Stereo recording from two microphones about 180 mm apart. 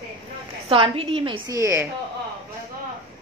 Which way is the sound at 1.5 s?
15° right (ahead or behind).